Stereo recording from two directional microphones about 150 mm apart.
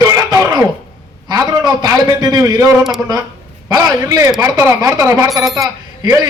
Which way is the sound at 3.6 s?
20° right (ahead or behind).